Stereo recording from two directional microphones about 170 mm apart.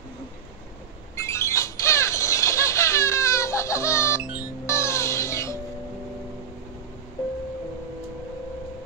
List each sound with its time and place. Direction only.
1.1 s a sound: 15° left (ahead or behind)
4.2 s music: 5° right (ahead or behind)
4.6 s music: 15° left (ahead or behind)